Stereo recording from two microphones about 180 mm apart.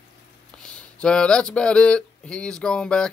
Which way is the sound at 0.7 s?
5° left (ahead or behind).